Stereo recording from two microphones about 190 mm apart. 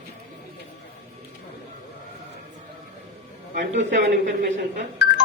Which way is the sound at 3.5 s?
45° right (ahead or behind).